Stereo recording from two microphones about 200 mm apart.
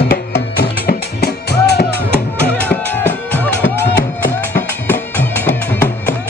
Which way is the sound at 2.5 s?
10° left (ahead or behind).